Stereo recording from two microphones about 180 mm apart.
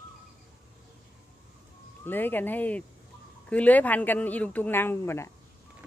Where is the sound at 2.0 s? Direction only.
10° left (ahead or behind).